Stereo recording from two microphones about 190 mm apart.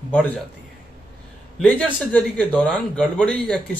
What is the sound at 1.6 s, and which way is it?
Speech, 5° left (ahead or behind).